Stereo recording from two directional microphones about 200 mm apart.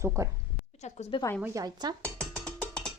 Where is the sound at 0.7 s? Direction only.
35° left (ahead or behind).